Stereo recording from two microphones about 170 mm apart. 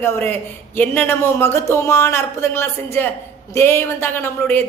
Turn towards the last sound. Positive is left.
turn(degrees=15)  # may be behind; listen again after turning